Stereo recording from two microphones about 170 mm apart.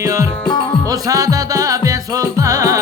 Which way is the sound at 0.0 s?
15° right (ahead or behind).